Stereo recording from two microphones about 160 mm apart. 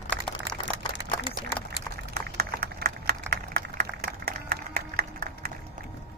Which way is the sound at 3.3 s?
65° right (ahead or behind).